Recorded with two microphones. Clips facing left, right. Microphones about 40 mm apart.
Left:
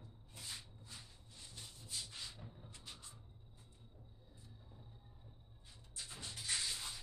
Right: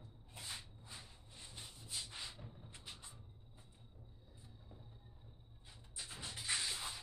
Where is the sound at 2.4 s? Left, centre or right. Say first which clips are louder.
Even; centre.